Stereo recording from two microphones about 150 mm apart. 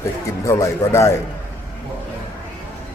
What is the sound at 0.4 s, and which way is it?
Speech, 20° left (ahead or behind).